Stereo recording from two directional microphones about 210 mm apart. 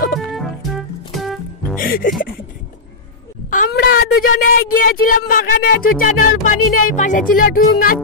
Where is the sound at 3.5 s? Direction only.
40° left (ahead or behind).